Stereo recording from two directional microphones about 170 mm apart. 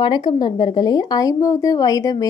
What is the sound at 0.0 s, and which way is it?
A woman's voice, 25° left (ahead or behind).